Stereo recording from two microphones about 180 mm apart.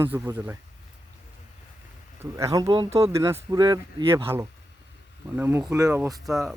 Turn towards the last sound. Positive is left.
turn(degrees=0)  # may be behind; listen again after turning